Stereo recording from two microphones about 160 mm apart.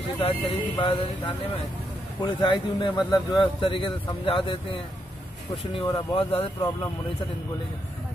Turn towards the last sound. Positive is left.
turn(degrees=25)  # may be behind; listen again after turning